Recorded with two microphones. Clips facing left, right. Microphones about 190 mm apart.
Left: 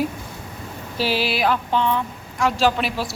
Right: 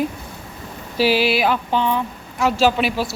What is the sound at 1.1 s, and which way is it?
Speech, centre (ahead or behind).